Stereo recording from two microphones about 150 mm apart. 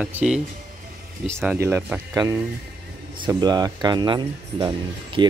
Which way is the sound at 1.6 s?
15° right (ahead or behind).